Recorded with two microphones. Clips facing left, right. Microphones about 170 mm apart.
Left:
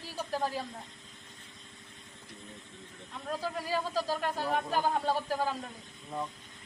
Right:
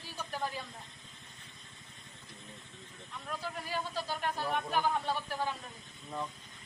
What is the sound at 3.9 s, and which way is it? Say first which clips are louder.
Speech: left 4 dB; 40° left (ahead or behind).